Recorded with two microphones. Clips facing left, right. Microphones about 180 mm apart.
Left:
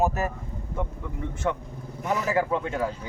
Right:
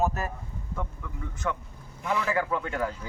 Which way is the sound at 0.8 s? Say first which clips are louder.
Left 6 dB; 25° left (ahead or behind).